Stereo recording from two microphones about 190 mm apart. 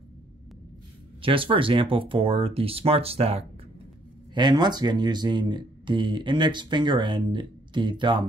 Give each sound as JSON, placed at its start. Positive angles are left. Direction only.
{"t": 1.2, "sound": "speech", "side_deg": -25}